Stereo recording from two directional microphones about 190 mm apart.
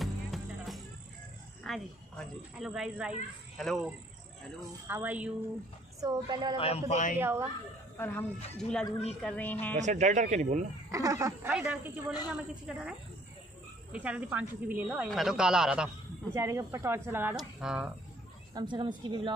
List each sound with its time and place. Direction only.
0.0 s music: centre (ahead or behind)
1.6 s a woman's voice: centre (ahead or behind)
5.9 s a woman's voice: 20° right (ahead or behind)
6.5 s a man's voice: 30° left (ahead or behind)
7.2 s speech: 15° right (ahead or behind)
8.0 s a woman's voice: 10° left (ahead or behind)
9.8 s speech: 40° right (ahead or behind)
10.9 s speech: 15° right (ahead or behind)
11.5 s a woman's voice: 5° right (ahead or behind)
13.9 s a woman's voice: 5° right (ahead or behind)
16.3 s a woman's voice: 15° right (ahead or behind)
18.5 s a woman's voice: 25° right (ahead or behind)